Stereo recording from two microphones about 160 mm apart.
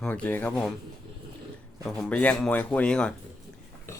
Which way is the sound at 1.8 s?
5° left (ahead or behind).